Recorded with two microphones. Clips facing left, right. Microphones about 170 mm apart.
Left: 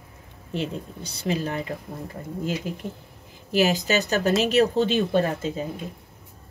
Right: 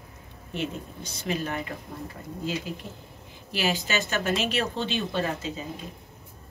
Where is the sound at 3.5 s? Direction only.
40° left (ahead or behind).